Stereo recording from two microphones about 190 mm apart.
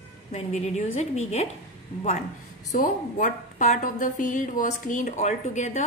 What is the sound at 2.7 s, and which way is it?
A woman's voice, 40° left (ahead or behind).